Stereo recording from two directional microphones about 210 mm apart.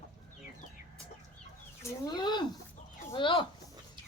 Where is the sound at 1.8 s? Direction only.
15° left (ahead or behind).